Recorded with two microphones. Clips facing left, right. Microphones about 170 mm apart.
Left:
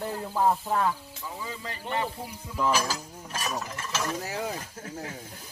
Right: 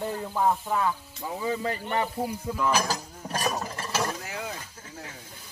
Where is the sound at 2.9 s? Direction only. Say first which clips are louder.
Right 3 dB; 35° right (ahead or behind).